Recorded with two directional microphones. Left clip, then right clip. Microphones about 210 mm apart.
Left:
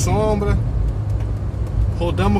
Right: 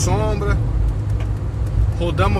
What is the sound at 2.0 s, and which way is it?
Speech, 25° left (ahead or behind).